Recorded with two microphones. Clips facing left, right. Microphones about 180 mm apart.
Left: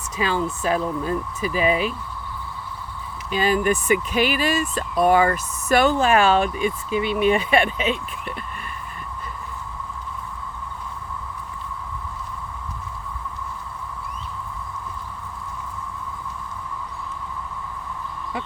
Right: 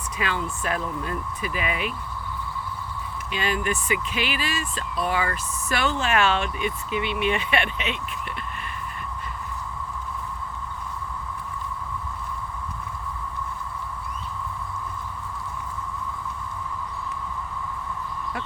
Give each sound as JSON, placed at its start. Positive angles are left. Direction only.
{"t": 0.2, "sound": "speech", "side_deg": 35}
{"t": 3.3, "sound": "speech", "side_deg": 40}